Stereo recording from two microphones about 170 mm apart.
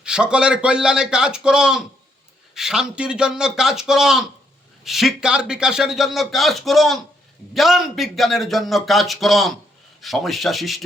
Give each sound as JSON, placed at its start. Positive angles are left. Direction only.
{"t": 0.0, "sound": "a man's voice", "side_deg": -5}